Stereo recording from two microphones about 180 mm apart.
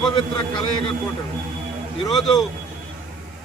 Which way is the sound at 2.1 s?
Centre (ahead or behind).